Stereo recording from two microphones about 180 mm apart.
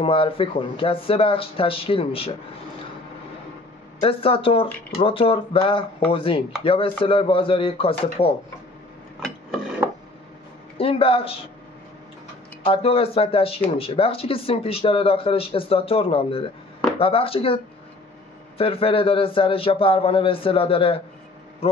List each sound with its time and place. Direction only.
0.0 s speech: 30° left (ahead or behind)
4.0 s speech: 30° left (ahead or behind)
10.8 s speech: 30° left (ahead or behind)
12.6 s speech: 30° left (ahead or behind)
18.6 s speech: 30° left (ahead or behind)